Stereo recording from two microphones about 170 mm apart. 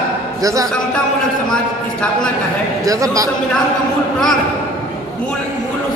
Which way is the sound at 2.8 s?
20° right (ahead or behind).